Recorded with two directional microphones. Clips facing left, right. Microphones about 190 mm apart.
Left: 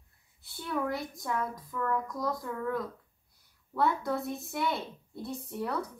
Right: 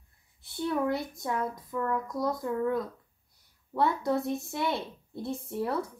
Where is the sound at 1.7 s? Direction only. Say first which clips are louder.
Right 1 dB; 20° right (ahead or behind).